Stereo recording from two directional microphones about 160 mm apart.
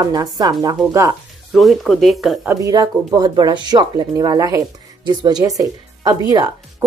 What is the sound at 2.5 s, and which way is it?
A woman's voice, 20° right (ahead or behind).